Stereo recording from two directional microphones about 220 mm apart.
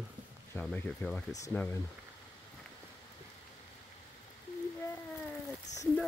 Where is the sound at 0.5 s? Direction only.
10° left (ahead or behind).